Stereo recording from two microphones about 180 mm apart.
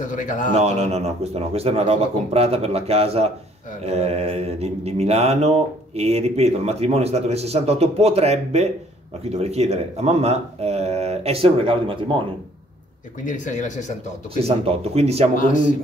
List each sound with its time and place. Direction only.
0.0 s speech: 45° left (ahead or behind)
0.6 s mantra: 35° right (ahead or behind)
13.2 s speech: 45° left (ahead or behind)
14.4 s mantra: 35° right (ahead or behind)
15.3 s speech: 45° left (ahead or behind)